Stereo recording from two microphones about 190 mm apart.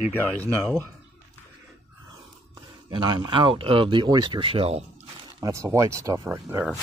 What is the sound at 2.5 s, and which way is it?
Speech, 25° right (ahead or behind).